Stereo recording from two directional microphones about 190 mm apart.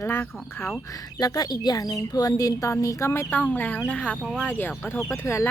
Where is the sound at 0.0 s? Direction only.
10° left (ahead or behind).